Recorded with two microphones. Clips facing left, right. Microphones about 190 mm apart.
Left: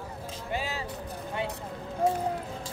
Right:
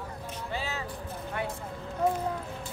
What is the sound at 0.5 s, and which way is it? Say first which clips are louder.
Vehicle: left 3 dB; 15° left (ahead or behind).